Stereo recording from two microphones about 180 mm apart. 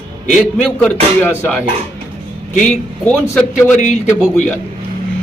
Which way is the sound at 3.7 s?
45° left (ahead or behind).